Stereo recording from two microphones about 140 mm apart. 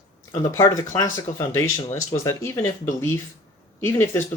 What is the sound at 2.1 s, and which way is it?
Speech, 20° left (ahead or behind).